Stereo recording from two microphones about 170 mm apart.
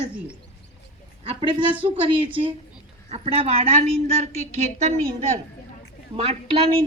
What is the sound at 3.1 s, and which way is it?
Speech, 35° right (ahead or behind).